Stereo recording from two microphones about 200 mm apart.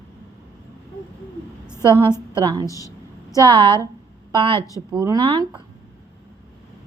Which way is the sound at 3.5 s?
25° right (ahead or behind).